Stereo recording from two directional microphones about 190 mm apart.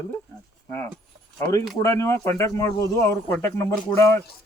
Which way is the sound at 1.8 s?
15° left (ahead or behind).